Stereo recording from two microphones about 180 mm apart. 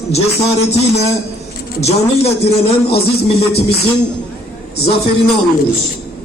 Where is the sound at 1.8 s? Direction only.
35° left (ahead or behind).